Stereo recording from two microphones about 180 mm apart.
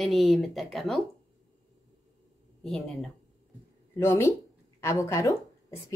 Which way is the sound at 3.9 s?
15° left (ahead or behind).